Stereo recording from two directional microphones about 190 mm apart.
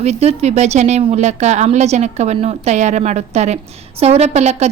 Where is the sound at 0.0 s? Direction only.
35° right (ahead or behind).